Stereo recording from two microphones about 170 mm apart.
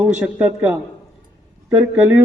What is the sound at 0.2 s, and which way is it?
A man's voice, 10° right (ahead or behind).